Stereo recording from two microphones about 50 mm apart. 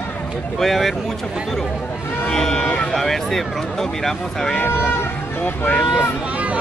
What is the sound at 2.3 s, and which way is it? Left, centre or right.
Speech, centre.